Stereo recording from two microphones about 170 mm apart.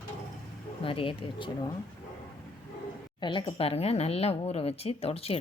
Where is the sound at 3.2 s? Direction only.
30° left (ahead or behind).